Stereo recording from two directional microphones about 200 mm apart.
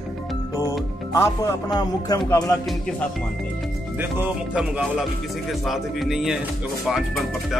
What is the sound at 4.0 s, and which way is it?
Speech, 10° right (ahead or behind).